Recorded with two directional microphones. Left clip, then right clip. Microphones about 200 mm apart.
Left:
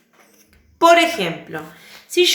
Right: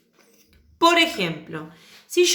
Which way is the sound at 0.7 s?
50° right (ahead or behind).